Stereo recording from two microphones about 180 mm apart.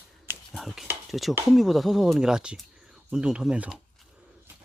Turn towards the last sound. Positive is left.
turn(degrees=-5)  # may be behind; listen again after turning